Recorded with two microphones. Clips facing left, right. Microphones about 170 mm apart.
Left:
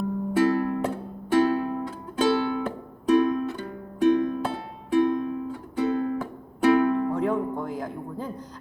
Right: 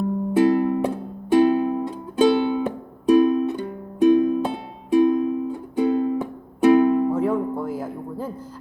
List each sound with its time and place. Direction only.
0.3 s music: 15° right (ahead or behind)
7.1 s music: 5° right (ahead or behind)